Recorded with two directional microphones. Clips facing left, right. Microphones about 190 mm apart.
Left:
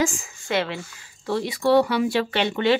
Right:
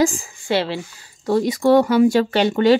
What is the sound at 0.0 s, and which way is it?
Speech, 35° right (ahead or behind).